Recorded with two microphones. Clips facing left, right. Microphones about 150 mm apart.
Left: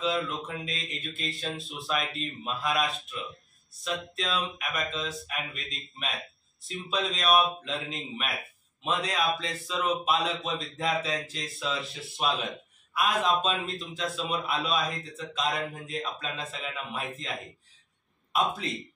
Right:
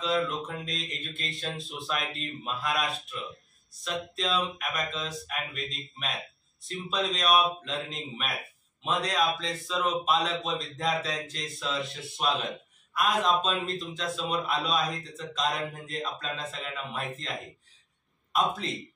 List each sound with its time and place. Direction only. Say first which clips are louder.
0.0 s speech: right 1 dB; centre (ahead or behind)